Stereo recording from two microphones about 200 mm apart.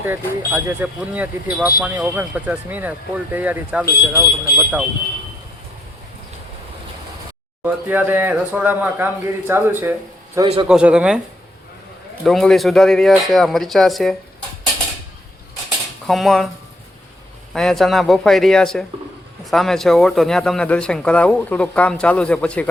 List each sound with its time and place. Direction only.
0.0 s speech: 10° right (ahead or behind)
7.6 s speech: 10° right (ahead or behind)
10.7 s speech: 5° right (ahead or behind)
12.2 s speech: centre (ahead or behind)
16.0 s speech: centre (ahead or behind)
17.5 s speech: centre (ahead or behind)